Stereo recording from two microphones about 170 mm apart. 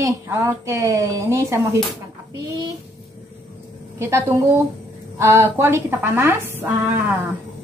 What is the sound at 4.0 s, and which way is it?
A woman's voice, 15° right (ahead or behind).